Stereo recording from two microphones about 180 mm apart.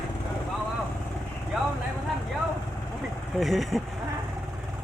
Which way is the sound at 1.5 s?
Centre (ahead or behind).